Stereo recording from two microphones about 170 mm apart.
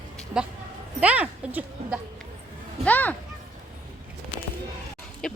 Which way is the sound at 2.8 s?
10° left (ahead or behind).